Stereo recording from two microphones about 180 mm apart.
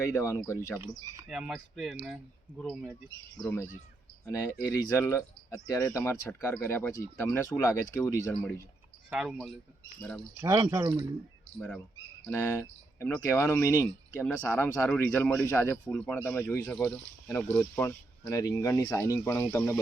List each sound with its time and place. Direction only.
0.0 s speech: 15° left (ahead or behind)
1.3 s speech: centre (ahead or behind)
4.3 s speech: 20° left (ahead or behind)
9.0 s speech: 5° right (ahead or behind)
10.4 s speech: 15° right (ahead or behind)
12.2 s speech: 10° left (ahead or behind)